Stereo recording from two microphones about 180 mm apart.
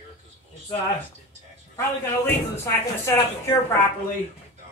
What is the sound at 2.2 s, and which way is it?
A man's voice, 15° left (ahead or behind).